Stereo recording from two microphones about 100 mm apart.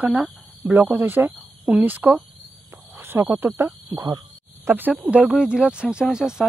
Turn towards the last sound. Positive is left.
turn(degrees=-5)  # may be behind; listen again after turning